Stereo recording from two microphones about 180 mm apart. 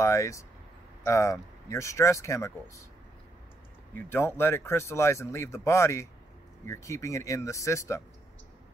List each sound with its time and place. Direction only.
0.0 s speech: 15° left (ahead or behind)
4.1 s speech: 15° left (ahead or behind)